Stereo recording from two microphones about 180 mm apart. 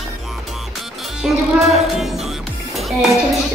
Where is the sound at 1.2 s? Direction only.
Centre (ahead or behind).